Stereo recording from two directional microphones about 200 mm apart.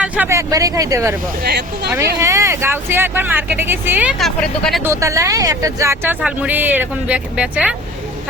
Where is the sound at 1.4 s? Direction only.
55° right (ahead or behind).